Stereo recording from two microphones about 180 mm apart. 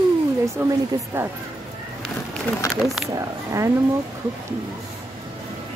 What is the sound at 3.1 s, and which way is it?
Speech, 15° right (ahead or behind).